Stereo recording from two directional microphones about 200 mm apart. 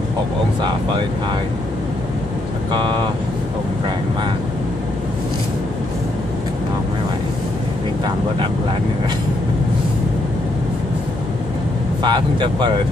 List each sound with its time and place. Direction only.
2.7 s speech: 20° right (ahead or behind)
12.0 s speech: 20° right (ahead or behind)